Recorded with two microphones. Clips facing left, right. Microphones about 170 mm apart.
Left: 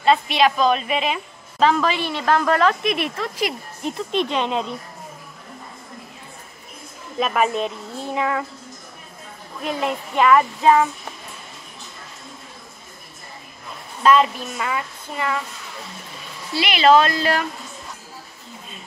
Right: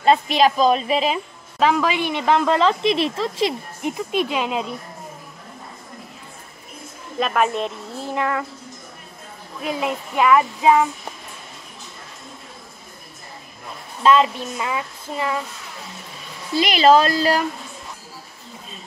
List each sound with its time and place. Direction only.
0.0 s speech: 40° right (ahead or behind)
1.6 s a woman's voice: 10° right (ahead or behind); by 3.5 s 25° right (ahead or behind)
3.8 s music: 10° right (ahead or behind)
7.2 s speech: centre (ahead or behind)
9.6 s music: centre (ahead or behind)
14.0 s music: centre (ahead or behind)
16.6 s speech: 40° right (ahead or behind)